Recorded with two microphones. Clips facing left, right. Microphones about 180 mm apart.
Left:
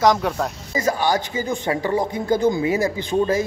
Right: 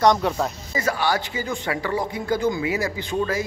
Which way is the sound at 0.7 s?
20° left (ahead or behind).